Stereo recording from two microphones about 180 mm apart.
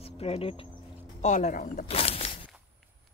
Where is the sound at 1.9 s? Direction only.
35° left (ahead or behind).